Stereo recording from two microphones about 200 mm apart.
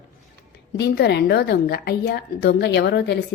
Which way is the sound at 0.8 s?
55° left (ahead or behind).